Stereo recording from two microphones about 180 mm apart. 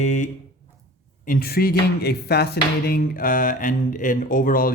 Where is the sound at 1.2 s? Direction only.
55° left (ahead or behind).